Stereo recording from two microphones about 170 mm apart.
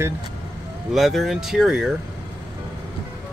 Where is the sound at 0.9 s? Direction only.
Centre (ahead or behind).